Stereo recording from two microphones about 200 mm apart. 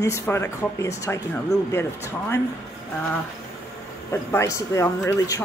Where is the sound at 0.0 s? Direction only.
15° left (ahead or behind).